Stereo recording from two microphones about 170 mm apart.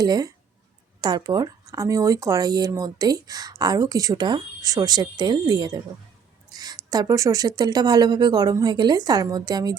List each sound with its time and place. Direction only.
0.0 s speech: 25° right (ahead or behind)